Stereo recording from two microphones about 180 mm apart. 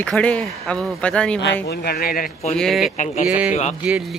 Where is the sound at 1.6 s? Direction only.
60° left (ahead or behind).